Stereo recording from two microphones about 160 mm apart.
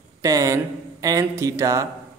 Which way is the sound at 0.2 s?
20° right (ahead or behind).